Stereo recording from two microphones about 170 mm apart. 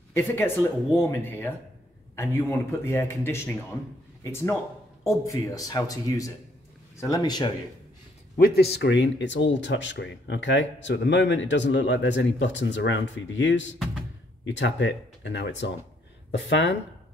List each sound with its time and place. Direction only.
0.1 s speech: 15° left (ahead or behind)
8.4 s speech: 65° left (ahead or behind); by 16.7 s 90° left